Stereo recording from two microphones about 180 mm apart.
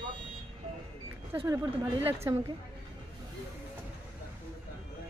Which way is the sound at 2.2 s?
15° right (ahead or behind).